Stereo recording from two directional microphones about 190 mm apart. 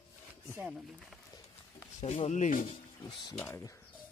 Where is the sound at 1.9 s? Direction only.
35° left (ahead or behind).